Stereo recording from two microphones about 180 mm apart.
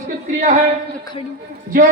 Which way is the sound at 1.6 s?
50° right (ahead or behind).